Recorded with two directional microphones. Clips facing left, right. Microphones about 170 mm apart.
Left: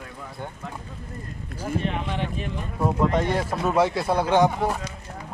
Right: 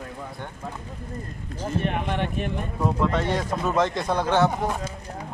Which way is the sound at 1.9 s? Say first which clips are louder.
Right 2 dB; 55° right (ahead or behind).